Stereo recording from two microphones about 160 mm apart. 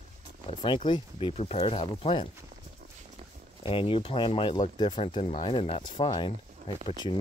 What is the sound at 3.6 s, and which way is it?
Speech, 35° left (ahead or behind).